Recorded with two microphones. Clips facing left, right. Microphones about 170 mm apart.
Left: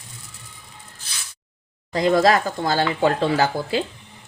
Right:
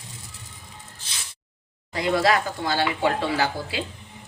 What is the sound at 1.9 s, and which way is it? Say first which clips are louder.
Speech: left 5 dB; 40° left (ahead or behind).